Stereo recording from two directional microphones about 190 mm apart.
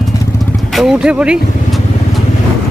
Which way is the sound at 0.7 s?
5° right (ahead or behind).